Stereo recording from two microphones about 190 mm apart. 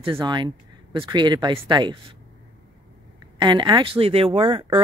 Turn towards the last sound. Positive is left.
turn(degrees=-25)  # may be behind; listen again after turning